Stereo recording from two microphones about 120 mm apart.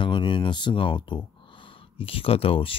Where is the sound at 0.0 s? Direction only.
40° left (ahead or behind).